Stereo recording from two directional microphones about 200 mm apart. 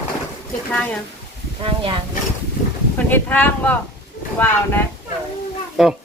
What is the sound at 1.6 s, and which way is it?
Speech, 25° right (ahead or behind).